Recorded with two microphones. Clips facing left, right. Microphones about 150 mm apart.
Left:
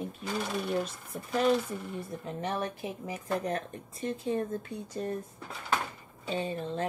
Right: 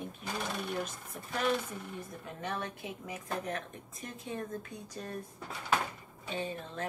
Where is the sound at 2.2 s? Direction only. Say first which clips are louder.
Left 5 dB; 35° left (ahead or behind).